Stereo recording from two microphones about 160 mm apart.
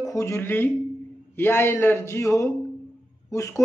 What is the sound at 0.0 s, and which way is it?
Speech, 20° left (ahead or behind).